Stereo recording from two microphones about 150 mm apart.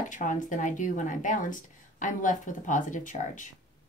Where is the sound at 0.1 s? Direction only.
60° left (ahead or behind).